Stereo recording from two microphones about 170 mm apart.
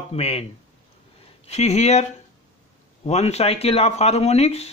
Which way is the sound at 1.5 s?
40° left (ahead or behind).